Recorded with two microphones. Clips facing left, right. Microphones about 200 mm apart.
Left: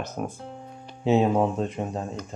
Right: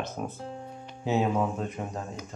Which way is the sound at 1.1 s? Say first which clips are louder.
Left 5 dB; 25° left (ahead or behind).